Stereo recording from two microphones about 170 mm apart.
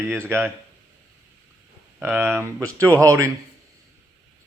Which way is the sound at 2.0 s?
10° right (ahead or behind).